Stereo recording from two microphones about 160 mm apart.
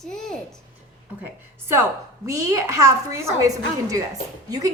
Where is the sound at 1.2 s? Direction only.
15° right (ahead or behind).